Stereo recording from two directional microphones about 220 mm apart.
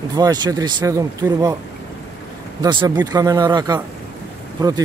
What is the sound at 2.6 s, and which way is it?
Speech, 20° right (ahead or behind).